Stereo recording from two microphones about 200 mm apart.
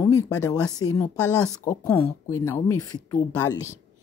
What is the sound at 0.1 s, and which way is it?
Speech, 15° left (ahead or behind).